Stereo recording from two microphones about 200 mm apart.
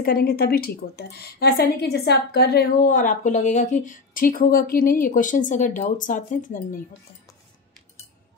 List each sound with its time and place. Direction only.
0.0 s a woman's voice: 50° left (ahead or behind)